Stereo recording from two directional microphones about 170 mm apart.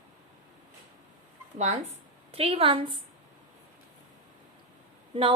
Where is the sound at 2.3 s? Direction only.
35° right (ahead or behind).